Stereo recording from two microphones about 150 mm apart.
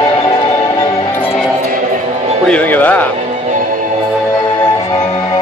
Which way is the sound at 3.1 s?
55° right (ahead or behind).